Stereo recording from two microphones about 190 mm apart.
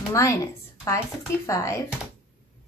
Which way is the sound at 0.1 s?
15° left (ahead or behind).